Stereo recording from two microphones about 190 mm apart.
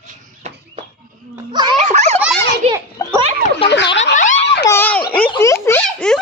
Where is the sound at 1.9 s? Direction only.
35° right (ahead or behind).